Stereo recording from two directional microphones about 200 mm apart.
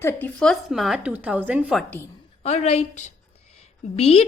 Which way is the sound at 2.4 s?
35° left (ahead or behind).